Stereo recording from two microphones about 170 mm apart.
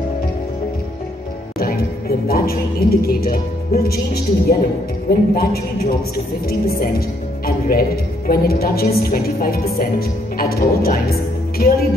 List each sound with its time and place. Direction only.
1.6 s a woman's voice: 65° left (ahead or behind)